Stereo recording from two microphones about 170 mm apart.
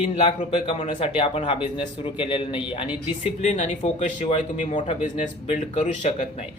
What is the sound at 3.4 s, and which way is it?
Speech, 45° left (ahead or behind).